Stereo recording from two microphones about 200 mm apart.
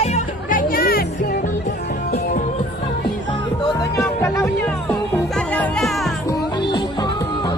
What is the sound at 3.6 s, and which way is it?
Music, 15° left (ahead or behind).